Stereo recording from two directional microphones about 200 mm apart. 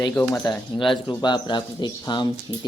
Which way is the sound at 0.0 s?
10° left (ahead or behind).